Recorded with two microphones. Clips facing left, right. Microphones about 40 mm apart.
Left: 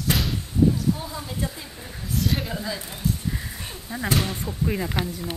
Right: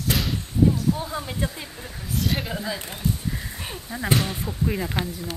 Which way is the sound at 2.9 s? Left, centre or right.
Centre.